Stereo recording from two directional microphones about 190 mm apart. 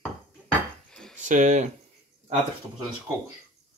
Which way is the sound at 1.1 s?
40° right (ahead or behind).